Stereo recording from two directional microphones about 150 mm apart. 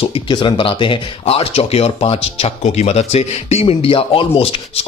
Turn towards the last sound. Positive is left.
turn(degrees=40)  # may be behind; listen again after turning